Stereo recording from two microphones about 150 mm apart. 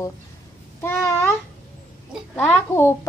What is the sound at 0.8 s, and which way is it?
Babbling, 15° left (ahead or behind).